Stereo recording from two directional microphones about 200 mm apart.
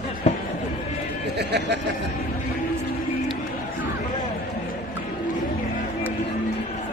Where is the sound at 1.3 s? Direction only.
55° right (ahead or behind).